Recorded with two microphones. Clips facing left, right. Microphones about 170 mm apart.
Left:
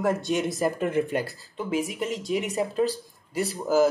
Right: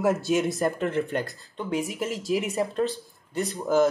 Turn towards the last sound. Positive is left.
turn(degrees=5)  # may be behind; listen again after turning